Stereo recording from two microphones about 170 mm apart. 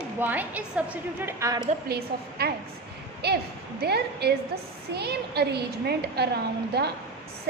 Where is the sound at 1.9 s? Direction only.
65° right (ahead or behind).